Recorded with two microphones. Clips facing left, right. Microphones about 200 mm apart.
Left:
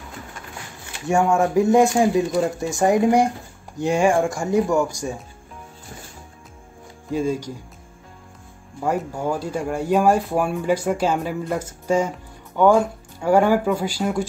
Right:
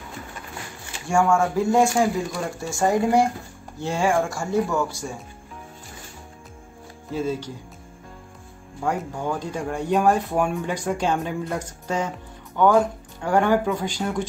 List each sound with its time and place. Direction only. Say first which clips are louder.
1.0 s speech: left 2 dB; 20° left (ahead or behind)
7.1 s speech: left 3 dB; 15° left (ahead or behind)
8.8 s speech: left 3 dB; 10° left (ahead or behind)